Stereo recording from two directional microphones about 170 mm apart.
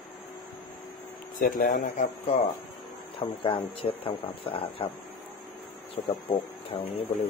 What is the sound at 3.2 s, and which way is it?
Speech, 30° left (ahead or behind).